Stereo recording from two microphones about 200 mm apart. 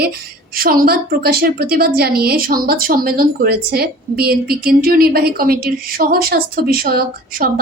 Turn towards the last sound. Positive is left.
turn(degrees=-45)  # may be behind; listen again after turning